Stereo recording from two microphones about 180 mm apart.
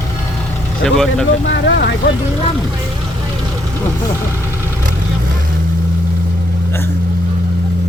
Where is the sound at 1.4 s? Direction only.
75° left (ahead or behind).